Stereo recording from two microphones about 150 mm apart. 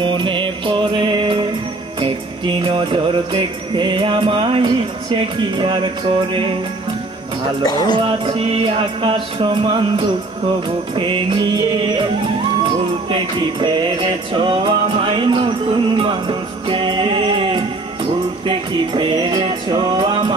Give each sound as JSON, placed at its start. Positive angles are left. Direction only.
{"t": 0.0, "sound": "music", "side_deg": -35}
{"t": 7.6, "sound": "music", "side_deg": 25}
{"t": 8.3, "sound": "music", "side_deg": -40}
{"t": 13.1, "sound": "music", "side_deg": -35}